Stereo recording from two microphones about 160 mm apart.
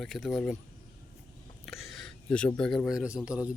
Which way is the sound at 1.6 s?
Centre (ahead or behind).